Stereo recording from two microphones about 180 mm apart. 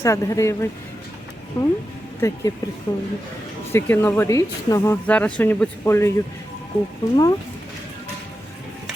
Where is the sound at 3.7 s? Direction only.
15° left (ahead or behind).